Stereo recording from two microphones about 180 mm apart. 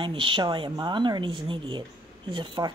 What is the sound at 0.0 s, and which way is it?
Speech, 30° right (ahead or behind).